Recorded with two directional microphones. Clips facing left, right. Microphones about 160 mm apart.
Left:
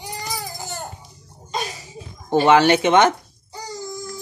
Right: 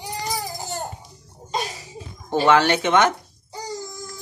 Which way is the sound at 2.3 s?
15° left (ahead or behind).